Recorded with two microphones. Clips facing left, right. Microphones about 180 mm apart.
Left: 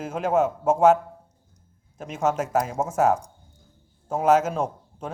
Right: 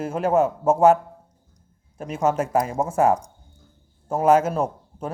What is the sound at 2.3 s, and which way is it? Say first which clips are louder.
Speech: right 2 dB; 5° left (ahead or behind).